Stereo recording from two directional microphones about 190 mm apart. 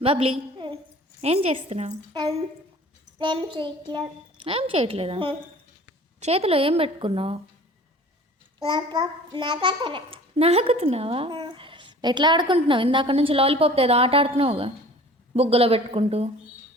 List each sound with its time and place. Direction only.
0.0 s a sound: 30° right (ahead or behind)
1.2 s a woman's voice: 30° right (ahead or behind)
3.2 s a child's voice: 25° right (ahead or behind)
8.5 s a child's voice: 25° right (ahead or behind)